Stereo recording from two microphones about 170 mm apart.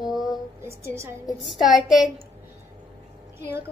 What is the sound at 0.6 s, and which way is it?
Speech, 15° right (ahead or behind).